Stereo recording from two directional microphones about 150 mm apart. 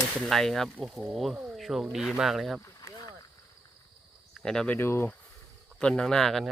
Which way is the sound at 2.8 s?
25° left (ahead or behind).